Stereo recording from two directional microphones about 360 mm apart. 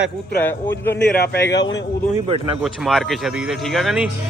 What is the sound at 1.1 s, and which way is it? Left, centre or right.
Speech, left.